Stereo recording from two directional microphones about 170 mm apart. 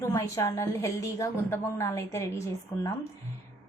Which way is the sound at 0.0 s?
20° left (ahead or behind).